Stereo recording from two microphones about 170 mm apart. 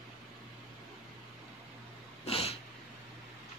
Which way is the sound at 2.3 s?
35° left (ahead or behind).